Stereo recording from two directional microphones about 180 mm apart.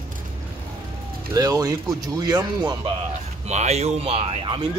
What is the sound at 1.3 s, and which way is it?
Speech, 20° right (ahead or behind).